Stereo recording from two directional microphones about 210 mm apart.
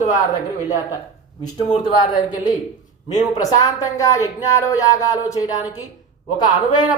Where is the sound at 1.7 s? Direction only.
20° left (ahead or behind).